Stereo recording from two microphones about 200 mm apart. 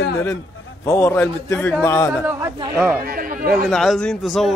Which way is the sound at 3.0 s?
45° right (ahead or behind).